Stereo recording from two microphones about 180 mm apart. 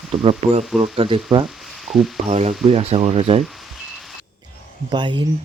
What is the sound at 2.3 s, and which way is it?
Speech, 35° right (ahead or behind).